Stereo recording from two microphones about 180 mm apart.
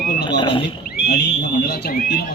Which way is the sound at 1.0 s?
60° left (ahead or behind).